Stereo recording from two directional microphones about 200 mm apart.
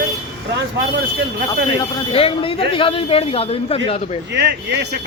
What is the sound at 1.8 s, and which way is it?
Speech, 25° left (ahead or behind).